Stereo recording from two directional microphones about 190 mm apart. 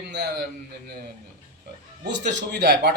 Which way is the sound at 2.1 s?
60° right (ahead or behind).